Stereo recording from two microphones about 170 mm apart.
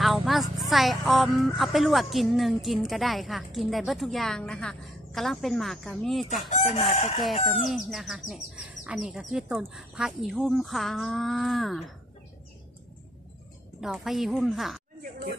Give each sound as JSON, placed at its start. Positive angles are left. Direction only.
{"t": 0.0, "sound": "speech", "side_deg": 0}
{"t": 6.5, "sound": "chicken", "side_deg": 35}
{"t": 7.4, "sound": "speech", "side_deg": 0}
{"t": 13.7, "sound": "speech", "side_deg": 0}